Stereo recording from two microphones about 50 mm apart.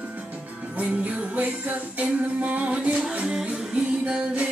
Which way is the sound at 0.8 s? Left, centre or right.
Right.